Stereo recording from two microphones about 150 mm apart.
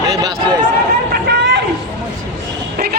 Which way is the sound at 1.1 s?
90° right.